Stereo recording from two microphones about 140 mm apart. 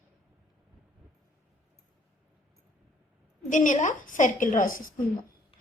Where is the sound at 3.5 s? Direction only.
65° left (ahead or behind); by 4.9 s 85° left.